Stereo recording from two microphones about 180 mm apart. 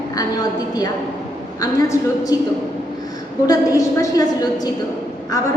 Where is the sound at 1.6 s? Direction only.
20° left (ahead or behind).